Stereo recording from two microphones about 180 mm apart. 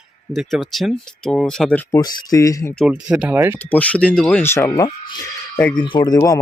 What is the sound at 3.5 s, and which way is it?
Speech, 10° left (ahead or behind).